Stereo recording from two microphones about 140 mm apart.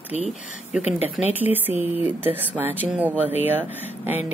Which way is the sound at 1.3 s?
15° right (ahead or behind).